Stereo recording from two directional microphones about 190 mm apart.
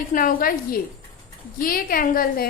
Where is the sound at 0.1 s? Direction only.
45° left (ahead or behind).